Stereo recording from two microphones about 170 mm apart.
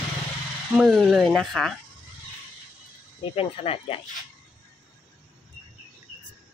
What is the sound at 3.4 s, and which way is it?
Speech, 35° left (ahead or behind).